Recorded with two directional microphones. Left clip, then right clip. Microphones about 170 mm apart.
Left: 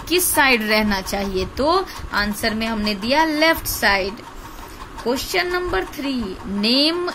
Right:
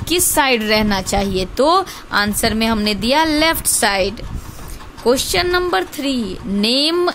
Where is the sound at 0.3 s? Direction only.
35° right (ahead or behind).